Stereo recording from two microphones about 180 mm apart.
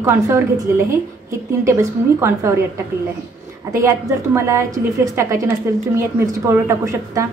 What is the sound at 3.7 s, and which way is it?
A woman's voice, 15° right (ahead or behind).